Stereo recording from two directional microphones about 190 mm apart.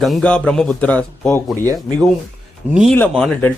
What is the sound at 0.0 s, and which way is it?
Speech, 5° left (ahead or behind).